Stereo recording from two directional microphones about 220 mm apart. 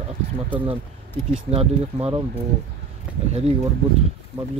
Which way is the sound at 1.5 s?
30° right (ahead or behind).